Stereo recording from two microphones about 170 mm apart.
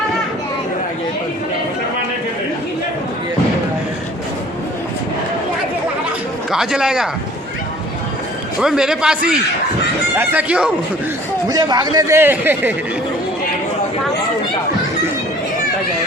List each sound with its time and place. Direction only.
6.5 s a man's voice: 5° right (ahead or behind)
8.6 s a man's voice: 5° right (ahead or behind)
11.4 s speech: 20° right (ahead or behind)